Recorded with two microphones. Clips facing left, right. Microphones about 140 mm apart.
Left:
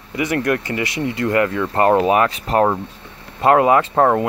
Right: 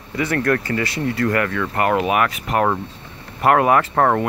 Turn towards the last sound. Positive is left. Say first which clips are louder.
# left 2 dB
turn(degrees=20)  # may be behind; listen again after turning